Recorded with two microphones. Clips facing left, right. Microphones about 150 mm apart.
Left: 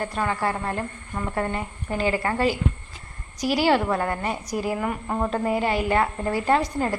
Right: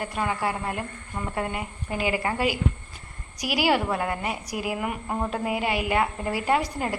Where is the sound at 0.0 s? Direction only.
10° right (ahead or behind).